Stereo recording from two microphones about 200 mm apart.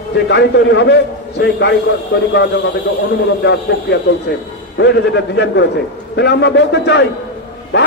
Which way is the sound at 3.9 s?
55° left (ahead or behind).